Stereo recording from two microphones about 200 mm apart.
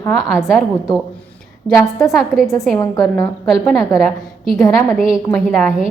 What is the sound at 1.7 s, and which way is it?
Speech, 15° left (ahead or behind).